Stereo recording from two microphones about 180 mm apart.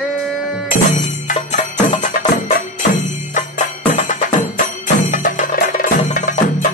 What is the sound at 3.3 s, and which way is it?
Music, 45° left (ahead or behind).